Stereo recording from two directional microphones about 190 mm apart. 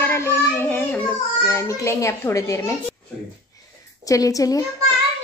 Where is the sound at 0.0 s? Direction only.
15° left (ahead or behind).